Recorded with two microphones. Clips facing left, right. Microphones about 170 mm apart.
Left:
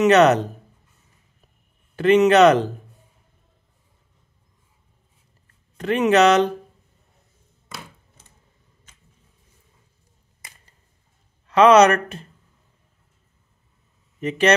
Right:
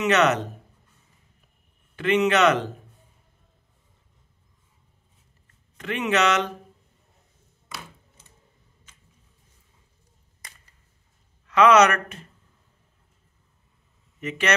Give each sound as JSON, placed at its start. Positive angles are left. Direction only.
{"t": 0.0, "sound": "speech", "side_deg": 35}
{"t": 2.0, "sound": "speech", "side_deg": 40}
{"t": 5.8, "sound": "speech", "side_deg": 40}
{"t": 11.4, "sound": "speech", "side_deg": 30}